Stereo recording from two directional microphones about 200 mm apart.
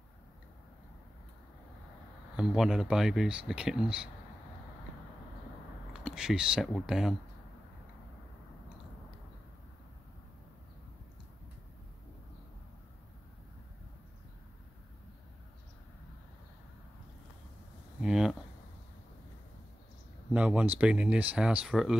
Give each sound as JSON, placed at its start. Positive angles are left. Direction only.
{"t": 2.3, "sound": "speech", "side_deg": -5}
{"t": 5.9, "sound": "speech", "side_deg": -5}
{"t": 18.0, "sound": "a sound", "side_deg": -5}
{"t": 20.3, "sound": "speech", "side_deg": -5}